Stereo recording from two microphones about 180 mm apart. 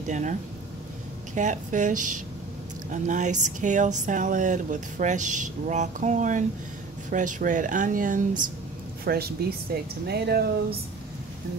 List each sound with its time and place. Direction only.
0.0 s speech: 45° right (ahead or behind)
9.0 s a woman's voice: 60° right (ahead or behind)